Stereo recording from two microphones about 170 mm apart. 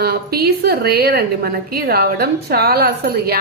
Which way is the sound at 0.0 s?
65° right (ahead or behind).